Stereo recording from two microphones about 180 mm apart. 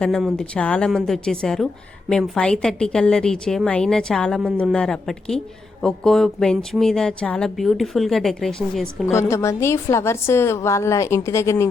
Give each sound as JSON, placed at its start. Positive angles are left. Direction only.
{"t": 0.0, "sound": "speech", "side_deg": 0}
{"t": 9.1, "sound": "a woman's voice", "side_deg": 15}